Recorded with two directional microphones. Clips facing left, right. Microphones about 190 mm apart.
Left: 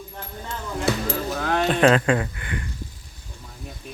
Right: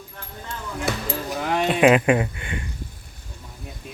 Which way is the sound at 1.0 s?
15° right (ahead or behind).